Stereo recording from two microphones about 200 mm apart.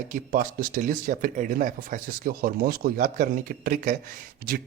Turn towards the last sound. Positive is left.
turn(degrees=-50)  # may be behind; listen again after turning